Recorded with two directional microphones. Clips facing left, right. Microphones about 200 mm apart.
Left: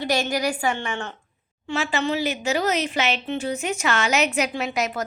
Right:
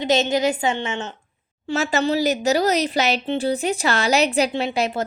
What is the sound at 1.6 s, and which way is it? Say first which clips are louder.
A woman's voice: right 4 dB; 40° right (ahead or behind).